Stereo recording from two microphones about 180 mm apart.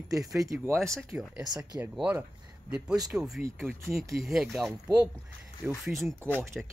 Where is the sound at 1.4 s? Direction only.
20° right (ahead or behind); by 6.7 s centre (ahead or behind).